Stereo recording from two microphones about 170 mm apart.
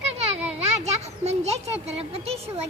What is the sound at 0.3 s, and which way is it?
A child's voice, 40° right (ahead or behind).